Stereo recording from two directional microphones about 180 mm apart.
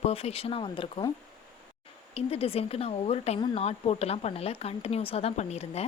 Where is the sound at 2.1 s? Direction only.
35° left (ahead or behind).